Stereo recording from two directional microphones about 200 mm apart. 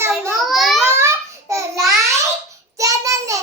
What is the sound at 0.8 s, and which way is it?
Babbling, 15° right (ahead or behind).